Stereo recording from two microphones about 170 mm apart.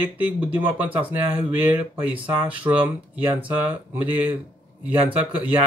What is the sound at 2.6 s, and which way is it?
Speech, 20° right (ahead or behind).